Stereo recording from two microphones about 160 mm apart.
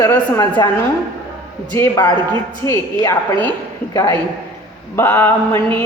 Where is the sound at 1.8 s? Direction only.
25° left (ahead or behind).